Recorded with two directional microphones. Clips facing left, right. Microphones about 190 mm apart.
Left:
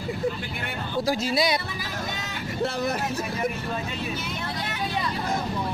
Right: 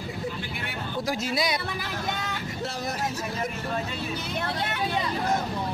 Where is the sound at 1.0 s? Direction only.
30° left (ahead or behind).